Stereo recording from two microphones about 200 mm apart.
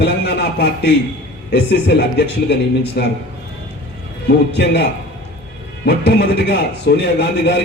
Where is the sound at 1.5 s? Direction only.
55° left (ahead or behind).